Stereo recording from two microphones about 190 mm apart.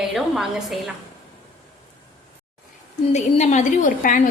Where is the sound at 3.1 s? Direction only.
35° left (ahead or behind).